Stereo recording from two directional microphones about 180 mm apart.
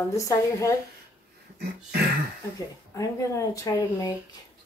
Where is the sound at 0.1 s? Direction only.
15° left (ahead or behind).